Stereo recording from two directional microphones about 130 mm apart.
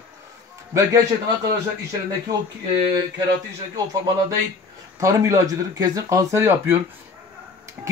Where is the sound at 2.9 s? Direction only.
30° right (ahead or behind).